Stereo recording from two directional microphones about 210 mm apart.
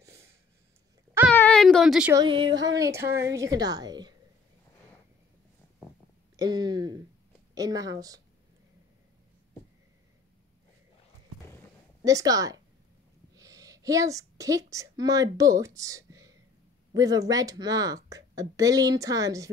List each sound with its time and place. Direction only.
1.3 s a sound: 5° left (ahead or behind)
2.1 s a woman's voice: 25° right (ahead or behind)
6.3 s a woman's voice: 20° right (ahead or behind)
12.0 s a woman's voice: 15° right (ahead or behind)